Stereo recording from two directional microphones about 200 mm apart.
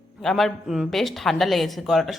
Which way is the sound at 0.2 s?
Centre (ahead or behind).